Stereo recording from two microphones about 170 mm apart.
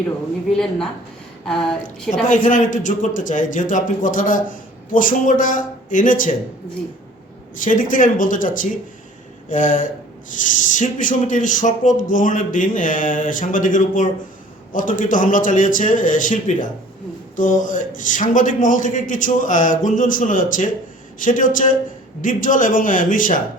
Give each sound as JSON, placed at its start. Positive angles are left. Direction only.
{"t": 0.5, "sound": "a woman's voice", "side_deg": 5}
{"t": 2.2, "sound": "a man's voice", "side_deg": 50}
{"t": 7.6, "sound": "a man's voice", "side_deg": 50}